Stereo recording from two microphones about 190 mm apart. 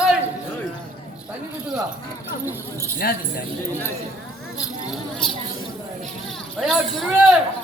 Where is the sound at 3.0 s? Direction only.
55° left (ahead or behind).